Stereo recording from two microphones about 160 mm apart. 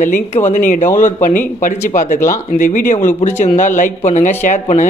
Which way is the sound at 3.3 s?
15° left (ahead or behind).